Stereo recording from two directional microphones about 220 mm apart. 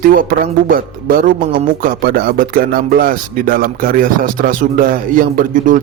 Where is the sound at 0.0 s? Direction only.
40° right (ahead or behind).